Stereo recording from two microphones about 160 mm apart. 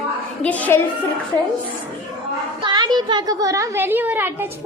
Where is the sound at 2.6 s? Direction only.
25° right (ahead or behind).